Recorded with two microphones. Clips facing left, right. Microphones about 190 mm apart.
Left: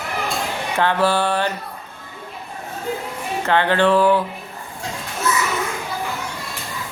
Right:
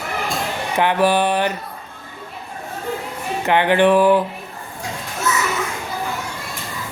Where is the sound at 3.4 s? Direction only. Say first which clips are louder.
Right 2 dB; 15° right (ahead or behind).